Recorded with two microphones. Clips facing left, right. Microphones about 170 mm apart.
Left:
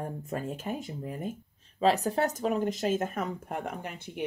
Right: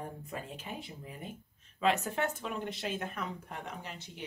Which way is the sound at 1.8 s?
35° left (ahead or behind).